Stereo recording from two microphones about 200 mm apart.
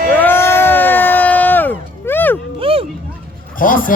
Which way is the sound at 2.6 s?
30° right (ahead or behind).